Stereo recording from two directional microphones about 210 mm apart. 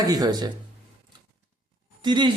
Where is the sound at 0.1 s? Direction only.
20° right (ahead or behind).